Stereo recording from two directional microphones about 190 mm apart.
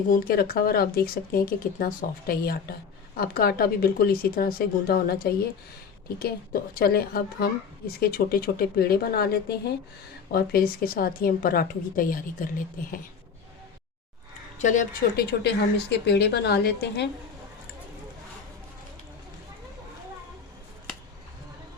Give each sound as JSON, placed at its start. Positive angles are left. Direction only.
{"t": 0.1, "sound": "a woman's voice", "side_deg": 50}
{"t": 14.6, "sound": "speech", "side_deg": 40}
{"t": 15.9, "sound": "a woman's voice", "side_deg": 60}